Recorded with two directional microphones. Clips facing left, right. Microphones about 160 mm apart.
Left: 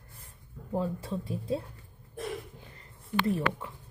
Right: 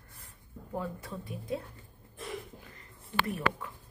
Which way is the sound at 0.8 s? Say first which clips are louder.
Left 5 dB; 30° left (ahead or behind).